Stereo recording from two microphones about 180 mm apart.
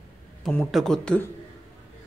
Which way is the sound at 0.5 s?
5° left (ahead or behind).